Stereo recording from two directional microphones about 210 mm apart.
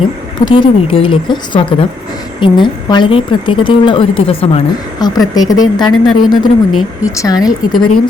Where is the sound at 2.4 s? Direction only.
20° left (ahead or behind).